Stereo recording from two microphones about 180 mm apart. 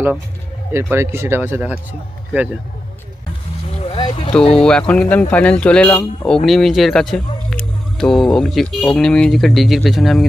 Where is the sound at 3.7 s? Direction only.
30° left (ahead or behind).